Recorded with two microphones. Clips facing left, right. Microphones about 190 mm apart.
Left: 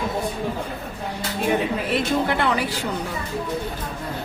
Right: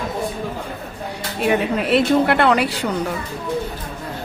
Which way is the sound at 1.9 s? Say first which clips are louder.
Right 7 dB; 70° right (ahead or behind).